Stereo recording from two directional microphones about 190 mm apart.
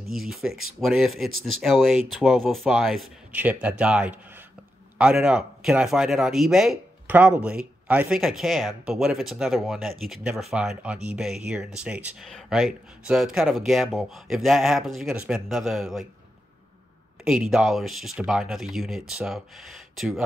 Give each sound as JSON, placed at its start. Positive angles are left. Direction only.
{"t": 0.0, "sound": "speech", "side_deg": 0}
{"t": 17.2, "sound": "speech", "side_deg": -5}